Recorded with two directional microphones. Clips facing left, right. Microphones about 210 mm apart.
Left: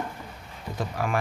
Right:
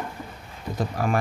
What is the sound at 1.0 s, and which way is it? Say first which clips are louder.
Speech: right 3 dB; 40° right (ahead or behind).